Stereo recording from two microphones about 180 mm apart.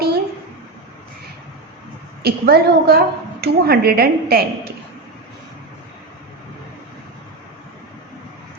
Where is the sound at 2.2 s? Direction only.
60° right (ahead or behind).